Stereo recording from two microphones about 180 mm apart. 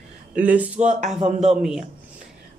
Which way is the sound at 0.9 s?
40° right (ahead or behind).